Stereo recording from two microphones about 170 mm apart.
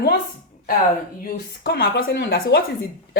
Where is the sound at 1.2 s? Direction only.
60° left (ahead or behind); by 2.6 s 80° left.